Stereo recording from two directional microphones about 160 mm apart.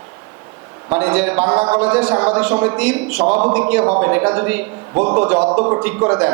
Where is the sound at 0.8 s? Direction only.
10° right (ahead or behind).